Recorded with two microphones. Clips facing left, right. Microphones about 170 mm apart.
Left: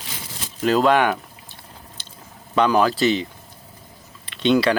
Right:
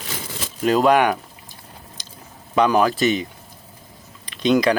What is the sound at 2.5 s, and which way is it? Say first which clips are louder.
Speech: right 1 dB; 15° right (ahead or behind).